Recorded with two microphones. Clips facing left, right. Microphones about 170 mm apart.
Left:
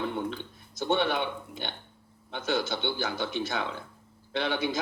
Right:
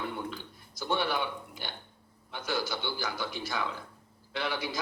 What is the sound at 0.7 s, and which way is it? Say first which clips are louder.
A man's voice: left 4 dB; 25° left (ahead or behind).